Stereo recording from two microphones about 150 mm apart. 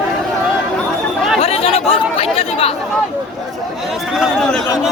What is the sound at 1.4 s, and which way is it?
Speech, 40° left (ahead or behind).